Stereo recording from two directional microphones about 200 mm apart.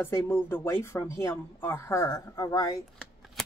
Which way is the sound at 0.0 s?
10° left (ahead or behind).